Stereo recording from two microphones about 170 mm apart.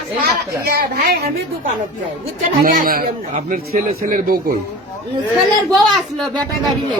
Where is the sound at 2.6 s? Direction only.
55° right (ahead or behind).